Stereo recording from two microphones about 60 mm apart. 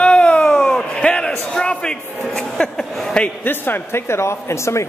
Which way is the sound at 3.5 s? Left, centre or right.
Left.